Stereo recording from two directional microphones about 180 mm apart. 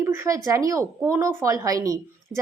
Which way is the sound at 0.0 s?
15° right (ahead or behind).